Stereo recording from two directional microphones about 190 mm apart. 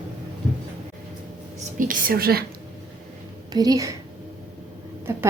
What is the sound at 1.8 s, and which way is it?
Speech, 45° right (ahead or behind).